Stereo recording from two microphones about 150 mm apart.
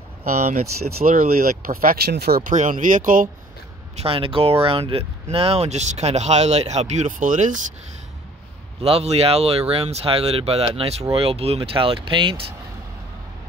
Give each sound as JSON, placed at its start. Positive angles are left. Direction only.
{"t": 0.3, "sound": "speech", "side_deg": -50}
{"t": 1.0, "sound": "speech", "side_deg": -70}
{"t": 2.5, "sound": "speech", "side_deg": -60}
{"t": 4.0, "sound": "speech", "side_deg": -35}
{"t": 8.8, "sound": "speech", "side_deg": -45}